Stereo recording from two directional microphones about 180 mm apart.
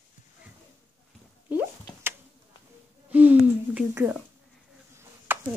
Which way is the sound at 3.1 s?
10° right (ahead or behind).